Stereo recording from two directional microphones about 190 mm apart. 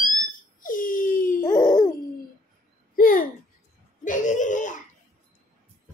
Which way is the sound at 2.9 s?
50° left (ahead or behind).